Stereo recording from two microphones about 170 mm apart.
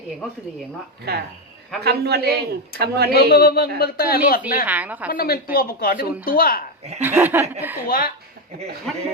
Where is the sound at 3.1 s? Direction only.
65° left (ahead or behind).